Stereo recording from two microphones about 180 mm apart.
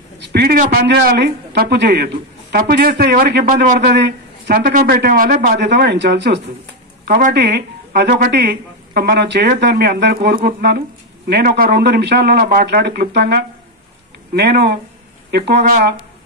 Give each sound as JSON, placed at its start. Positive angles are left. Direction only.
{"t": 0.2, "sound": "a woman's voice", "side_deg": -60}
{"t": 2.5, "sound": "a woman's voice", "side_deg": -55}
{"t": 4.5, "sound": "a woman's voice", "side_deg": -50}
{"t": 7.1, "sound": "speech", "side_deg": -45}
{"t": 7.3, "sound": "a woman's voice", "side_deg": -70}